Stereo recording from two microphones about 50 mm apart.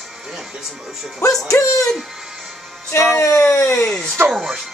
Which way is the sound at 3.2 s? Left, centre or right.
Left.